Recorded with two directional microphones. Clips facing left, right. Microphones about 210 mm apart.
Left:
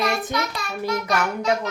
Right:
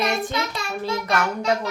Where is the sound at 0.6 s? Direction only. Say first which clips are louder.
Right 2 dB; 25° right (ahead or behind).